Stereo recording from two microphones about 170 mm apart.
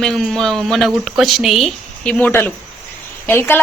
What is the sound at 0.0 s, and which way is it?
A woman's voice, 5° left (ahead or behind).